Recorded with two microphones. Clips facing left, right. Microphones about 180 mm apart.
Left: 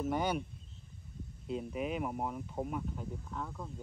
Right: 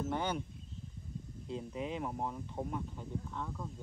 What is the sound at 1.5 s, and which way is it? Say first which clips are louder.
Speech: left 3 dB; 10° left (ahead or behind).